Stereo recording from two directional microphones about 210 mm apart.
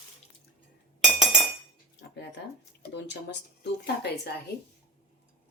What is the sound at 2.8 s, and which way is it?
A woman's voice, 55° left (ahead or behind).